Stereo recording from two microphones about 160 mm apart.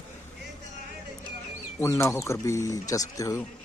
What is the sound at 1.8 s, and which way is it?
Speech, 15° left (ahead or behind).